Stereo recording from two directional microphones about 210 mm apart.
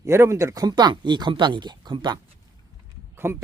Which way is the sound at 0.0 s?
15° right (ahead or behind).